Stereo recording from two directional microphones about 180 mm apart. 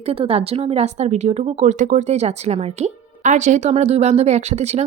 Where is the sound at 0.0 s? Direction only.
35° right (ahead or behind).